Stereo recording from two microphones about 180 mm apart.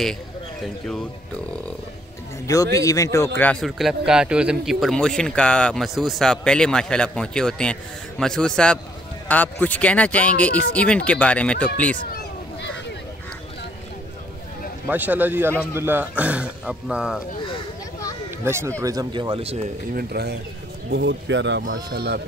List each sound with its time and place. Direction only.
2.4 s speech: 20° left (ahead or behind)
3.3 s a man's voice: 5° left (ahead or behind)
14.9 s a man's voice: 10° right (ahead or behind)
18.4 s a man's voice: 15° right (ahead or behind); by 19.7 s 35° right (ahead or behind)
19.9 s a man's voice: 55° right (ahead or behind)
20.9 s speech: 90° right
21.9 s a man's voice: 60° right (ahead or behind)